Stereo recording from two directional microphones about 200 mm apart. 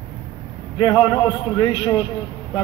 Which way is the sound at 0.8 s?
20° left (ahead or behind).